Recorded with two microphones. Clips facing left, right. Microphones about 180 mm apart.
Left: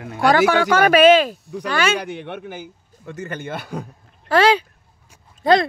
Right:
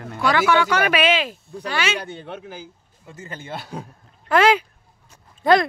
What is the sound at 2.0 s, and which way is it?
A man's voice, 80° left.